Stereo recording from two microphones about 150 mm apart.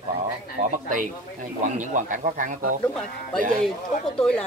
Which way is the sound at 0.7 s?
60° right (ahead or behind).